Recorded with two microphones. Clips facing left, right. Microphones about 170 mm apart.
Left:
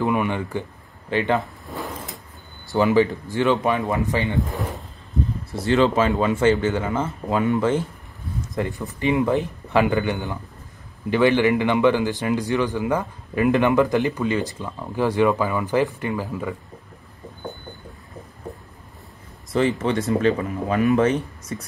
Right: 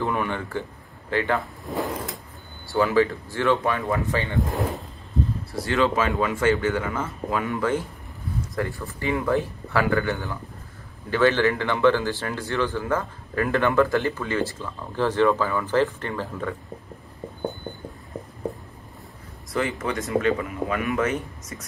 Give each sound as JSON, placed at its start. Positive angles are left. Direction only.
{"t": 0.0, "sound": "speech", "side_deg": 15}
{"t": 2.7, "sound": "a man's voice", "side_deg": 20}
{"t": 5.5, "sound": "a man's voice", "side_deg": 25}
{"t": 19.5, "sound": "speech", "side_deg": 25}